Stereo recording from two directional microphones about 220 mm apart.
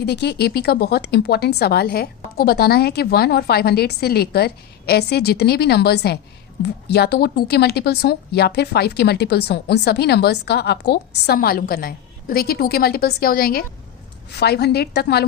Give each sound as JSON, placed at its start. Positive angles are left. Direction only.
{"t": 0.0, "sound": "speech", "side_deg": 50}